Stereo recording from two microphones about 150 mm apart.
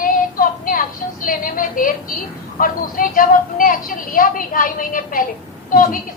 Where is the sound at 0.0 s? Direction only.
70° left (ahead or behind).